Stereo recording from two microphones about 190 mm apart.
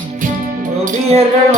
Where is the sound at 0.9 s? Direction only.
35° right (ahead or behind).